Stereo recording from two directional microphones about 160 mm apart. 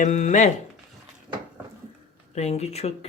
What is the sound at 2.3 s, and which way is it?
Speech, 40° left (ahead or behind).